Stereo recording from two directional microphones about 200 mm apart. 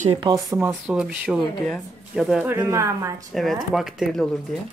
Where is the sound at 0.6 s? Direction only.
10° right (ahead or behind).